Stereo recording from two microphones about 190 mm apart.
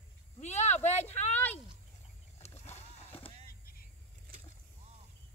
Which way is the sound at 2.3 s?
35° left (ahead or behind).